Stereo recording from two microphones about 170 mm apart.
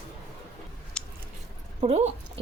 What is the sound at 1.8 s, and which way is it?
Speech, 40° right (ahead or behind).